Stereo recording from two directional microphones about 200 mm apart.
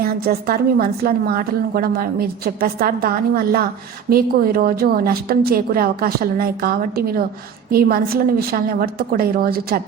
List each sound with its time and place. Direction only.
0.0 s a woman's voice: 50° right (ahead or behind)